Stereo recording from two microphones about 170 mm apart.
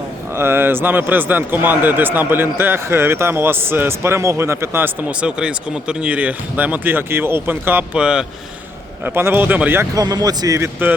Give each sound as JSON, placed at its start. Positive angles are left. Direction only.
{"t": 0.3, "sound": "speech", "side_deg": -15}
{"t": 9.9, "sound": "speech", "side_deg": -20}